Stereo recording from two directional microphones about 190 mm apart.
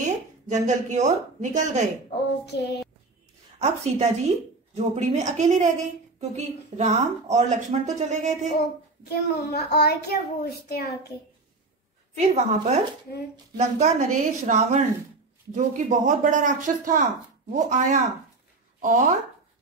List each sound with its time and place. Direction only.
0.0 s a woman's voice: 40° right (ahead or behind)
2.4 s a woman's voice: 60° left (ahead or behind)
3.5 s speech: 35° right (ahead or behind)
9.1 s a woman's voice: 55° left (ahead or behind)
12.4 s speech: 35° right (ahead or behind)